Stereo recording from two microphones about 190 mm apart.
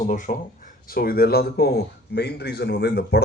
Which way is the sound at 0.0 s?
40° left (ahead or behind).